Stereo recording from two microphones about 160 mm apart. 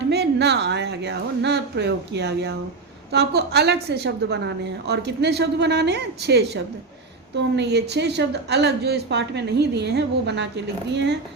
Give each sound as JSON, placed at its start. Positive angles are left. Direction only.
{"t": 0.1, "sound": "a woman's voice", "side_deg": -90}